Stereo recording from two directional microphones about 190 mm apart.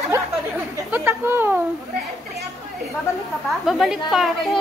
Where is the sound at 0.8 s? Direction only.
10° right (ahead or behind).